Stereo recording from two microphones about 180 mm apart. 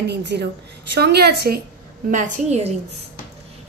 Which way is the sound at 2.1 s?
45° right (ahead or behind).